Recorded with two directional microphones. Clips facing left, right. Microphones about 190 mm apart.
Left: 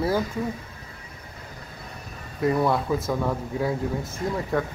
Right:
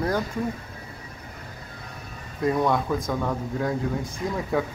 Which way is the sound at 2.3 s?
5° left (ahead or behind).